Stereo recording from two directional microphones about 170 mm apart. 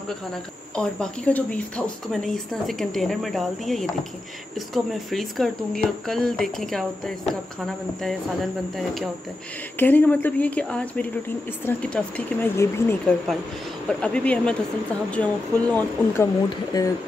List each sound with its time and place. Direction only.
0.3 s speech: 5° left (ahead or behind)
9.8 s speech: 10° left (ahead or behind)
16.4 s speech: 20° left (ahead or behind)